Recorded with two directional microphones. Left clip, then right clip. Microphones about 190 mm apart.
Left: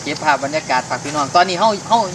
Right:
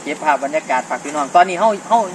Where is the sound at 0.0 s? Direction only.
5° right (ahead or behind).